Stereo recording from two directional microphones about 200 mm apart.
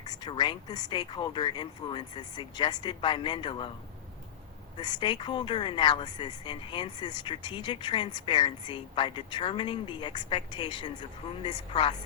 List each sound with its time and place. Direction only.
0.0 s speech: 20° left (ahead or behind)
4.8 s speech: 20° left (ahead or behind)